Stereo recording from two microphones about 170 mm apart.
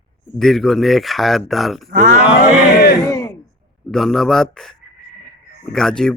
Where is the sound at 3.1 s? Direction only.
20° left (ahead or behind).